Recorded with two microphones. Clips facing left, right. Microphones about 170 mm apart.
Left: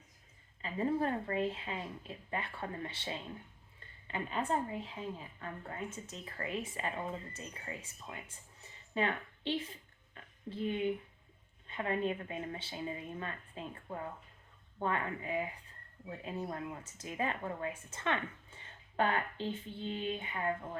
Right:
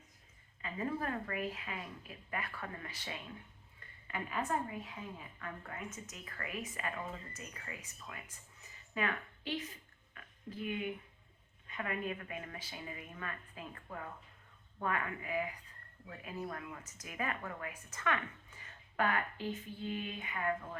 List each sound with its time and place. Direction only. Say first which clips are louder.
0.6 s a woman's voice: left 5 dB; 30° left (ahead or behind)
10.2 s a sound: left 4 dB; 30° left (ahead or behind)
11.7 s a woman's voice: left 5 dB; 30° left (ahead or behind)